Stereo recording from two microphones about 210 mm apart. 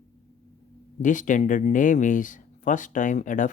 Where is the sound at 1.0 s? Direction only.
35° left (ahead or behind).